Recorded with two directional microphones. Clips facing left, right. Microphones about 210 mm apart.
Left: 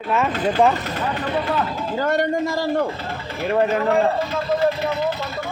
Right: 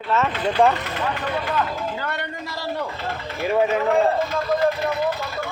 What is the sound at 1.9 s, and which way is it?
Speech, 45° left (ahead or behind).